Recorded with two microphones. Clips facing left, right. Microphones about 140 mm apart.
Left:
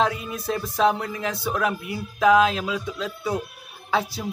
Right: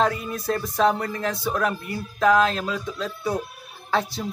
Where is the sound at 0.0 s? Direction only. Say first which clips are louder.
Right 1 dB; centre (ahead or behind).